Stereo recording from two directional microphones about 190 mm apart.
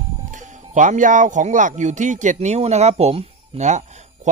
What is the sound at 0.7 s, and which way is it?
A man's voice, 40° right (ahead or behind).